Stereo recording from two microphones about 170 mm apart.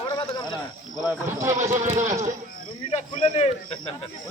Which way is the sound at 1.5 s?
45° right (ahead or behind).